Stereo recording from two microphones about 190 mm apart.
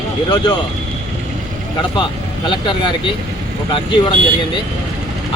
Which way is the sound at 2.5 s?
25° left (ahead or behind).